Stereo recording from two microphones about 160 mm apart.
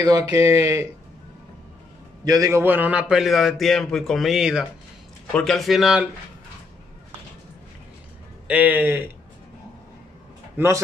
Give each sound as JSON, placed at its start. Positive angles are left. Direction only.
{"t": 0.0, "sound": "speech", "side_deg": -25}
{"t": 2.2, "sound": "a man's voice", "side_deg": -20}
{"t": 8.5, "sound": "speech", "side_deg": -10}